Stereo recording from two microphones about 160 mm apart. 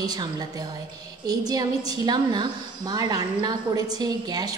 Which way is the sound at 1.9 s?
25° right (ahead or behind).